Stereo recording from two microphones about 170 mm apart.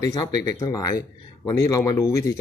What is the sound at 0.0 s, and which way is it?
Speech, 20° left (ahead or behind).